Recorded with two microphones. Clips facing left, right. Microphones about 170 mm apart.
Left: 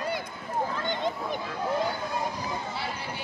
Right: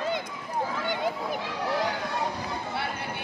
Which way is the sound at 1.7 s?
80° right.